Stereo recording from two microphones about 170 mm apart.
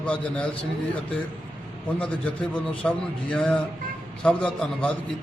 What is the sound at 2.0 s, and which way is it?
Speech, 5° left (ahead or behind).